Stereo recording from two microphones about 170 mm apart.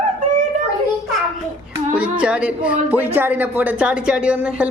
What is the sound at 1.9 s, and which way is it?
Speech, 5° right (ahead or behind).